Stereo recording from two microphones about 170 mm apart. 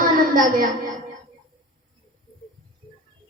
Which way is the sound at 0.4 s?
55° right (ahead or behind).